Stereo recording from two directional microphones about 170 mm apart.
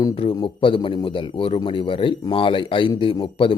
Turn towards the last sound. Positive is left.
turn(degrees=30)  # may be behind; listen again after turning